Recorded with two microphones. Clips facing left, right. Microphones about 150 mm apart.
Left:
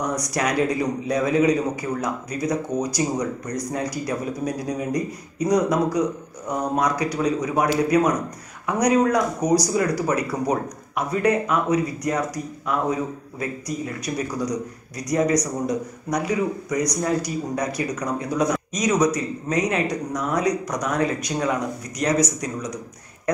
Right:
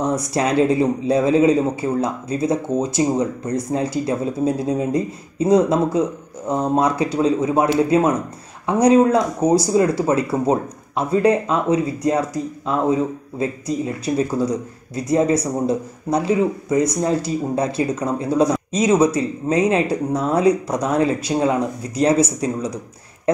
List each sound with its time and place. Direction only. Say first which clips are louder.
0.0 s speech: right 4 dB; 25° right (ahead or behind)